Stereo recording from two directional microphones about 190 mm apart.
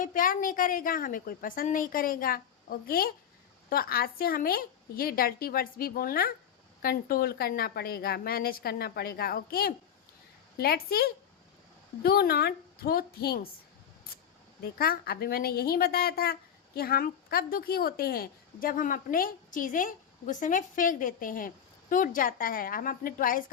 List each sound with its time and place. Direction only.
0.0 s a woman's voice: 45° left (ahead or behind)
14.6 s a woman's voice: 50° left (ahead or behind)